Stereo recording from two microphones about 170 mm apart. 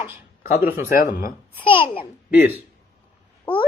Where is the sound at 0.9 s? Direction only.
55° left (ahead or behind).